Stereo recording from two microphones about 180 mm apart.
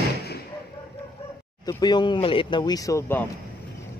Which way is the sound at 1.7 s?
25° left (ahead or behind).